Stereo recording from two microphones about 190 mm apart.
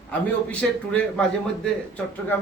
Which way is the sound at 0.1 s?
5° left (ahead or behind).